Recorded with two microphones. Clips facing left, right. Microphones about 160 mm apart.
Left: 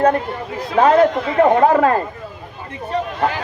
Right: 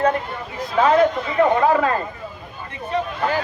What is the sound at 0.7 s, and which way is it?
Speech, 55° left (ahead or behind).